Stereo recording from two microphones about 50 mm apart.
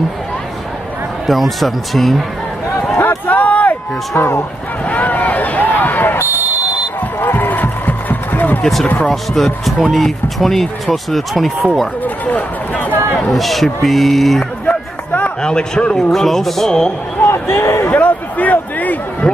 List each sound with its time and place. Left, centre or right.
1.2 s speech: centre
3.3 s a sound: left
4.2 s speech: left
4.8 s speech: left
7.2 s heart murmur: left
9.1 s speech: centre
12.0 s speech: left
13.3 s speech: centre
14.7 s music: left
15.4 s a man's voice: centre
16.0 s speech: centre
17.2 s speech: left
17.8 s speech: left